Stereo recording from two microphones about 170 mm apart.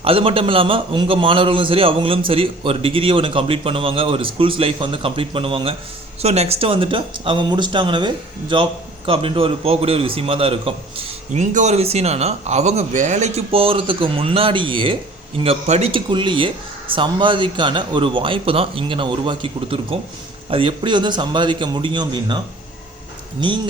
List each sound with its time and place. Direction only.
0.0 s a man's voice: 35° right (ahead or behind)